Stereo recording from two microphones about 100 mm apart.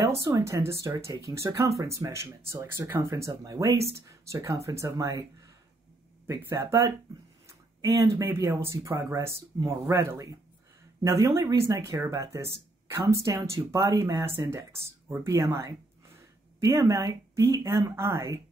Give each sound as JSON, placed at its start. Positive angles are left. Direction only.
{"t": 0.0, "sound": "speech", "side_deg": -25}
{"t": 6.2, "sound": "speech", "side_deg": -30}